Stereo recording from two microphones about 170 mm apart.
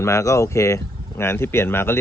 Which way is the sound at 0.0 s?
15° left (ahead or behind).